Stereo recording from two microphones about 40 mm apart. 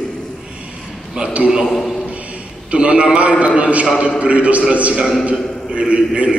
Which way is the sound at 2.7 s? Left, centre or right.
Right.